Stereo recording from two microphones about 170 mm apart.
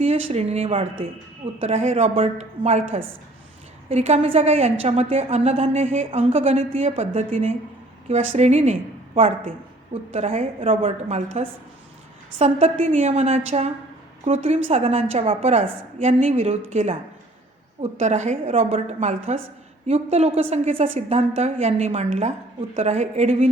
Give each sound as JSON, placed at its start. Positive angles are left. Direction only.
{"t": 0.0, "sound": "a woman's voice", "side_deg": -40}
{"t": 18.0, "sound": "a woman's voice", "side_deg": -45}